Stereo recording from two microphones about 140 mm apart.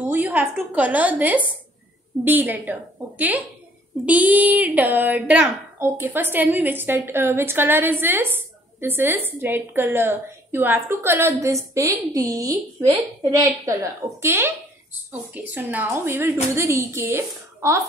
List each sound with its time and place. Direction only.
0.0 s a woman's voice: 10° right (ahead or behind)